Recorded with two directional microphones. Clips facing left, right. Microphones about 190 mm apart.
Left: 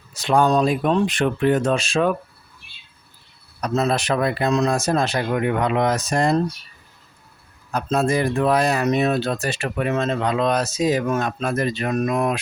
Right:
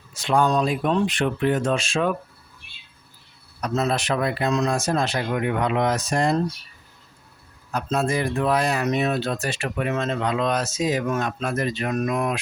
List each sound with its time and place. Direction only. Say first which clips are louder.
0.1 s speech: left 3 dB; 40° left (ahead or behind)
3.6 s speech: left 3 dB; 40° left (ahead or behind)
7.7 s speech: left 3 dB; 40° left (ahead or behind)